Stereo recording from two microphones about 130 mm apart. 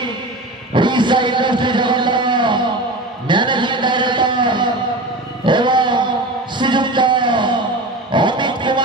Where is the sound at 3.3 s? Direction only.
35° right (ahead or behind).